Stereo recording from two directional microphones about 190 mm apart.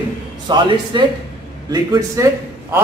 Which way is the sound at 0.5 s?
20° right (ahead or behind).